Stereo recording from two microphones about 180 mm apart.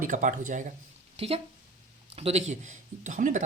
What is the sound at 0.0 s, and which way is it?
Speech, 45° right (ahead or behind).